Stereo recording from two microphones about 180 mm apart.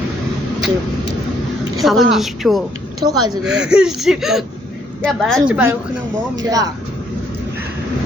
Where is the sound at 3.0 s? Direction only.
20° right (ahead or behind).